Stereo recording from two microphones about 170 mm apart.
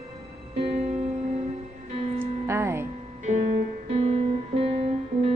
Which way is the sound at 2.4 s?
15° right (ahead or behind).